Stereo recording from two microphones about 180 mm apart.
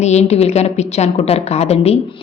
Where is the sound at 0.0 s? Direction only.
40° left (ahead or behind).